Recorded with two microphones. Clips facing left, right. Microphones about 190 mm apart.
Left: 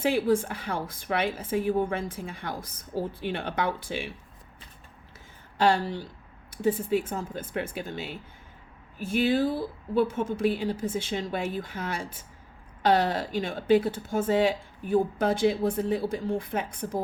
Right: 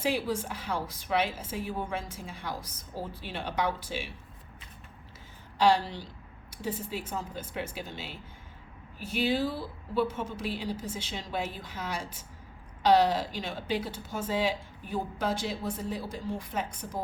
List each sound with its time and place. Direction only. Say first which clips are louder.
0.0 s a woman's voice: left 6 dB; 55° left (ahead or behind)
5.5 s speech: left 1 dB; 55° left (ahead or behind)